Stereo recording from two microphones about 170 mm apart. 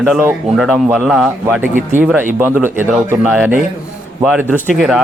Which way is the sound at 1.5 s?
10° right (ahead or behind).